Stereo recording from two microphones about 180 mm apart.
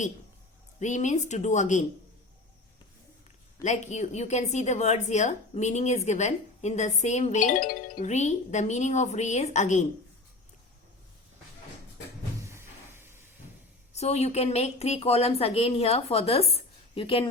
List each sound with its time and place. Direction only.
0.8 s a woman's voice: 40° left (ahead or behind)
3.6 s a woman's voice: 40° left (ahead or behind)
12.5 s a sound: 15° right (ahead or behind)
13.9 s a woman's voice: 35° left (ahead or behind)